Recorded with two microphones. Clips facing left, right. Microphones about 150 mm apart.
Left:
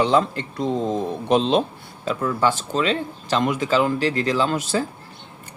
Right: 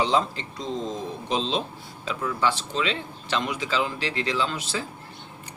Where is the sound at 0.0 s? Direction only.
55° left (ahead or behind).